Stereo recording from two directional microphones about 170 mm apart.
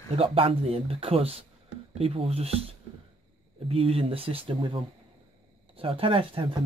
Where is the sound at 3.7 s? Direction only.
35° right (ahead or behind).